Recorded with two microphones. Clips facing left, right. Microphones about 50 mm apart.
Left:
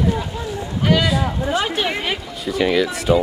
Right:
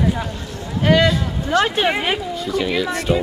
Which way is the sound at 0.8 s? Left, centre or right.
Centre.